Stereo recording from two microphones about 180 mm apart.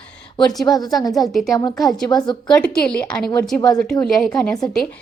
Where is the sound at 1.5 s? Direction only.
25° left (ahead or behind).